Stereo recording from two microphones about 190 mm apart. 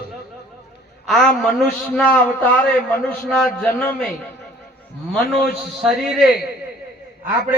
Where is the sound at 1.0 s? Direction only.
Centre (ahead or behind).